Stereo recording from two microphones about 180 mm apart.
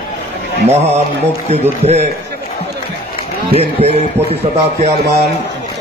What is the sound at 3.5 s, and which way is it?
Speech, 35° right (ahead or behind).